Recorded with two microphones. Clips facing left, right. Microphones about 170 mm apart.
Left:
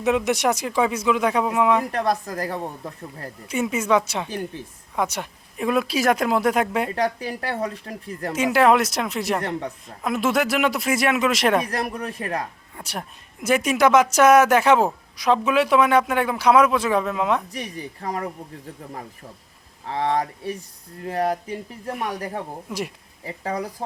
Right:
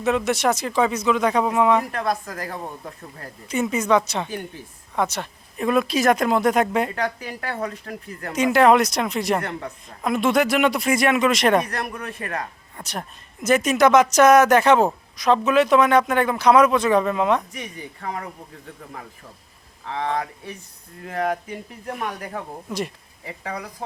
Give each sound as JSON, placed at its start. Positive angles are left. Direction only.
{"t": 0.0, "sound": "a man's voice", "side_deg": 15}
{"t": 1.9, "sound": "speech", "side_deg": 35}
{"t": 3.5, "sound": "a man's voice", "side_deg": 5}
{"t": 6.9, "sound": "speech", "side_deg": 30}
{"t": 8.3, "sound": "speech", "side_deg": 5}
{"t": 9.4, "sound": "speech", "side_deg": 35}
{"t": 10.0, "sound": "speech", "side_deg": 5}
{"t": 11.7, "sound": "speech", "side_deg": 30}
{"t": 12.7, "sound": "a man's voice", "side_deg": 10}
{"t": 17.5, "sound": "speech", "side_deg": 35}
{"t": 19.9, "sound": "speech", "side_deg": 35}
{"t": 23.2, "sound": "speech", "side_deg": 35}